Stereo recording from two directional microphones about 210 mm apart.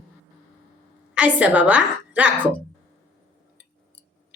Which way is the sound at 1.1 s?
5° right (ahead or behind).